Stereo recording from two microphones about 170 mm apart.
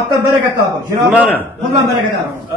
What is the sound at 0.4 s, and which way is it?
Speech, 20° right (ahead or behind).